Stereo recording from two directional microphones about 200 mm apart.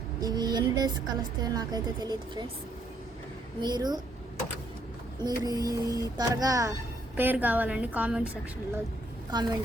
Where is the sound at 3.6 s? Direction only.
20° right (ahead or behind).